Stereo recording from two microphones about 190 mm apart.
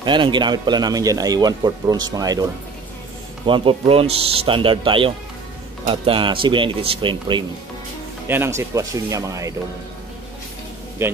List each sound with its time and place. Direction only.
0.0 s speech: 25° right (ahead or behind)
3.4 s speech: 25° right (ahead or behind)
8.3 s speech: 15° right (ahead or behind)
11.0 s a man's voice: 15° right (ahead or behind)